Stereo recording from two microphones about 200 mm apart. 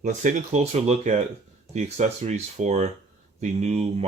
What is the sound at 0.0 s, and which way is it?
Speech, 40° right (ahead or behind).